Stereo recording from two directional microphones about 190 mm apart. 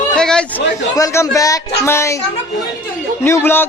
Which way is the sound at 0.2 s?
5° left (ahead or behind).